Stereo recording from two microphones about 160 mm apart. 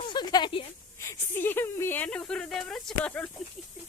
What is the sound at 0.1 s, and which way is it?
Speech, 25° left (ahead or behind).